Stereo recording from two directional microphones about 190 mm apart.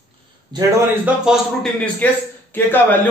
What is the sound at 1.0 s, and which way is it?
A man's voice, 5° right (ahead or behind).